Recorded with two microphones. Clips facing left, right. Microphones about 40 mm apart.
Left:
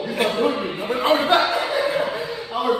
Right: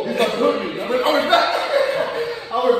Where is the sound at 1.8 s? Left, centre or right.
Right.